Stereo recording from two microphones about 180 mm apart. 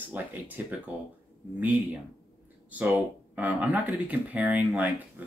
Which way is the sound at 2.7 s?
10° right (ahead or behind).